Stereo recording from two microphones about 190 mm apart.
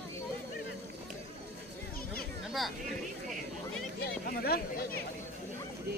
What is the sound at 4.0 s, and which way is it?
Speech, 55° left (ahead or behind).